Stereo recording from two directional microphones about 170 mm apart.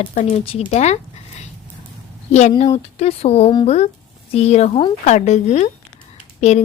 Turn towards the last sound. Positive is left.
turn(degrees=40)  # may be behind; listen again after turning